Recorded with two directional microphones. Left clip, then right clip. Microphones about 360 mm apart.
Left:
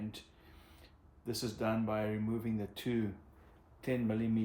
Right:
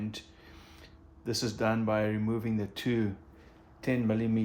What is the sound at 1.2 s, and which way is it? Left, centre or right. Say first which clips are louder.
Speech: right 6 dB; centre.